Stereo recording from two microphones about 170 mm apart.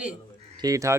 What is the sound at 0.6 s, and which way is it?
Speech, 20° right (ahead or behind).